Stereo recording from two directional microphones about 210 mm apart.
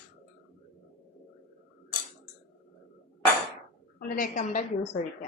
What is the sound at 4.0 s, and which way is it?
Speech, 40° left (ahead or behind).